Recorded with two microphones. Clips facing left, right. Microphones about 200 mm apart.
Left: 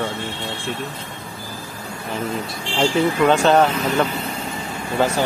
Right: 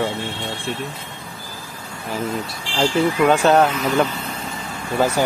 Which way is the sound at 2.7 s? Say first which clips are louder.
Even; centre (ahead or behind).